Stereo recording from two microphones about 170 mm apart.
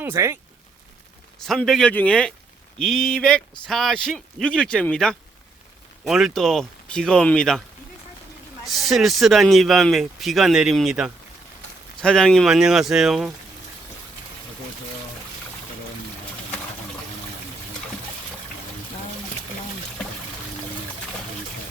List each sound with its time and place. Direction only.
0.0 s speech: 15° right (ahead or behind)
1.5 s speech: centre (ahead or behind)
8.6 s speech: centre (ahead or behind)